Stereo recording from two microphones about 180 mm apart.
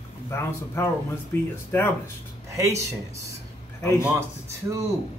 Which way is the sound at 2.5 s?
15° right (ahead or behind).